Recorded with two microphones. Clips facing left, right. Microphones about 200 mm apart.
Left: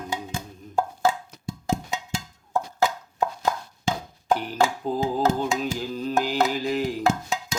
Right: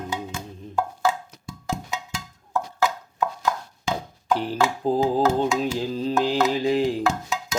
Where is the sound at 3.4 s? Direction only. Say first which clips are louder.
Even; 30° left (ahead or behind).